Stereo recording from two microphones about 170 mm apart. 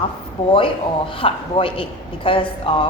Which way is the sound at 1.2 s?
30° left (ahead or behind).